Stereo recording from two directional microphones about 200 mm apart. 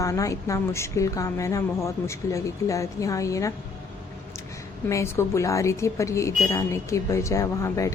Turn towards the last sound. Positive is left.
turn(degrees=15)  # may be behind; listen again after turning